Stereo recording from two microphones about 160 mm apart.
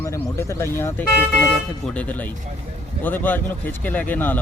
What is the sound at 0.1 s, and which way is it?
Speech, 15° left (ahead or behind).